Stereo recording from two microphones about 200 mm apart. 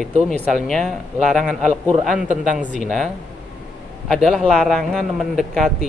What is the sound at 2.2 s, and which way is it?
Speech, 40° right (ahead or behind).